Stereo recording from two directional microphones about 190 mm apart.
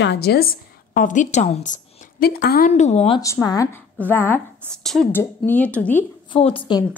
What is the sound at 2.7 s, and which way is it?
Speech, 35° left (ahead or behind).